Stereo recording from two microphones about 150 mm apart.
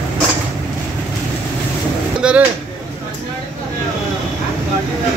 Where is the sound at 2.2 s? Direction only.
5° right (ahead or behind).